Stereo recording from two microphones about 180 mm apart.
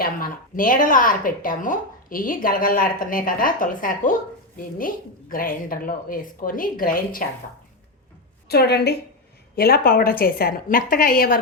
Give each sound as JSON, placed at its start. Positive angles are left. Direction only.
{"t": 0.0, "sound": "speech", "side_deg": 50}
{"t": 8.4, "sound": "a woman's voice", "side_deg": 65}